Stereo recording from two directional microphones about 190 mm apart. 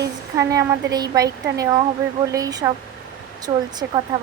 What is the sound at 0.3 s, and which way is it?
A woman's voice, 20° right (ahead or behind).